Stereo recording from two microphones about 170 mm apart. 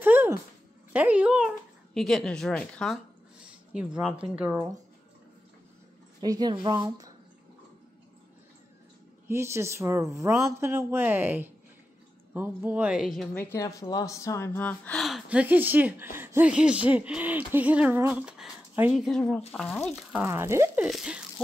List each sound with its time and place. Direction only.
0.0 s a sound: 10° right (ahead or behind)
0.9 s a woman's voice: 10° right (ahead or behind)
3.7 s speech: 5° right (ahead or behind)
6.2 s speech: 25° right (ahead or behind)
9.3 s a woman's voice: 15° right (ahead or behind); by 13.4 s centre (ahead or behind)
13.4 s a woman's voice: 15° left (ahead or behind); by 20.2 s centre (ahead or behind)
20.2 s speech: 15° right (ahead or behind)
20.8 s a woman's voice: 5° right (ahead or behind)